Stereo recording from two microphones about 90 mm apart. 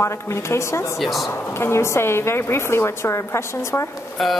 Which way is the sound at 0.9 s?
Centre (ahead or behind).